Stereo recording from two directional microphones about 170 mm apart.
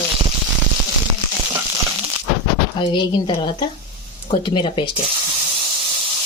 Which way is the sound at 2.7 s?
25° left (ahead or behind).